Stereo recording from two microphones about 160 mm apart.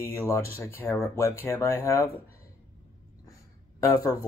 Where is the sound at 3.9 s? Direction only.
20° left (ahead or behind).